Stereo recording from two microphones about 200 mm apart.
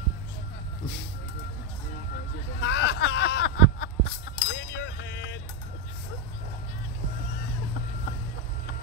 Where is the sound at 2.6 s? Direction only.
65° left (ahead or behind).